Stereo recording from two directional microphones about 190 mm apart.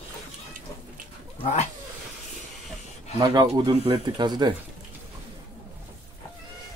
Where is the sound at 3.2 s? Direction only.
20° right (ahead or behind).